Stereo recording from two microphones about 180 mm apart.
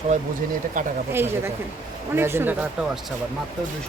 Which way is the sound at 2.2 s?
15° right (ahead or behind).